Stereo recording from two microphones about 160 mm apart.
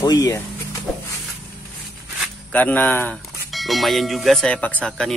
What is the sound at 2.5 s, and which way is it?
Speech, 10° left (ahead or behind).